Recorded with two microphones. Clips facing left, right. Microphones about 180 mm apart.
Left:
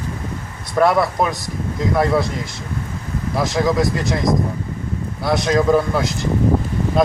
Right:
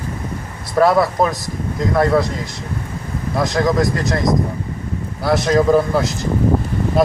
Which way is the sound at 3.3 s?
Centre (ahead or behind).